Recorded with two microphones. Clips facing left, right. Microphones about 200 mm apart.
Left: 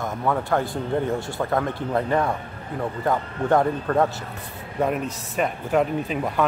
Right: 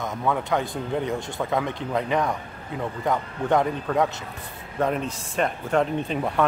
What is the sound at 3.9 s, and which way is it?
Speech, 5° right (ahead or behind).